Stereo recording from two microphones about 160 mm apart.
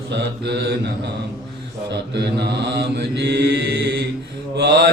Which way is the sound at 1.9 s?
90° right.